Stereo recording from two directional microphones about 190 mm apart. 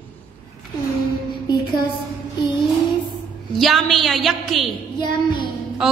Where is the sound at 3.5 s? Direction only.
Centre (ahead or behind).